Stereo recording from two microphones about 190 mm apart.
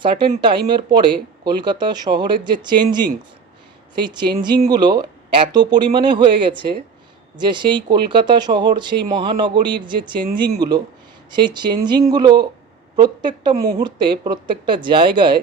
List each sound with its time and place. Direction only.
0.0 s speech: 25° right (ahead or behind)